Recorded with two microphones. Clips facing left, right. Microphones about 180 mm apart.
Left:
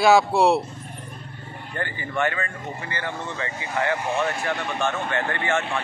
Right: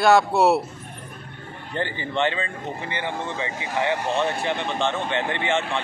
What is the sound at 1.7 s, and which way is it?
Speech, 25° right (ahead or behind).